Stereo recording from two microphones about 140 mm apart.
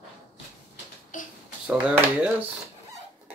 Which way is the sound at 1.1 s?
70° left (ahead or behind).